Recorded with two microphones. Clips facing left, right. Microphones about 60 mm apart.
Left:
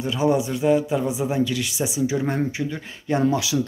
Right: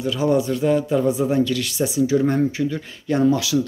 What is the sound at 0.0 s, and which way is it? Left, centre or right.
A man's voice, left.